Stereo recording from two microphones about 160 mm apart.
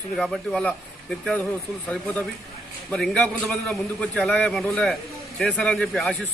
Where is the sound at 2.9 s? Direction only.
5° left (ahead or behind).